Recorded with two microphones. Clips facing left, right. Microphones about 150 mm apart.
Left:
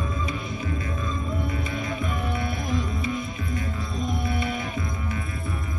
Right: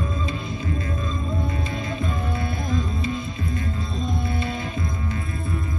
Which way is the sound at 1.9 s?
25° right (ahead or behind).